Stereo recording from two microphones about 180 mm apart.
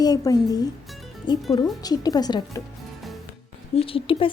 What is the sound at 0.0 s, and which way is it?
Speech, 20° left (ahead or behind).